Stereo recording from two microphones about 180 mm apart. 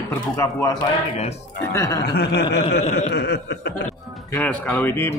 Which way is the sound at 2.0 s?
60° left (ahead or behind).